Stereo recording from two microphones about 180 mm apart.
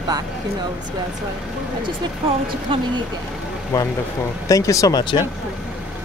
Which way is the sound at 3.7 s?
20° left (ahead or behind).